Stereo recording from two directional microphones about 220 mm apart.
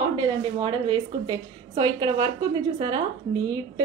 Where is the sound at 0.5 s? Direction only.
20° right (ahead or behind).